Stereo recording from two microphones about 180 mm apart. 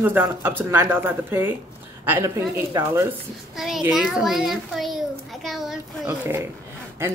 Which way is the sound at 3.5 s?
Centre (ahead or behind).